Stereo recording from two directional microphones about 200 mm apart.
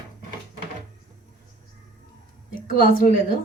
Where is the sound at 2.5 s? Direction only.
40° left (ahead or behind).